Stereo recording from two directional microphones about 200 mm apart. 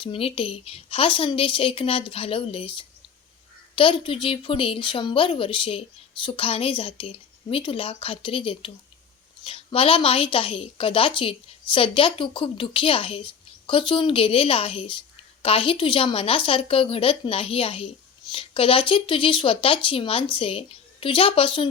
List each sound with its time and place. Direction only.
0.0 s a woman's voice: 25° left (ahead or behind)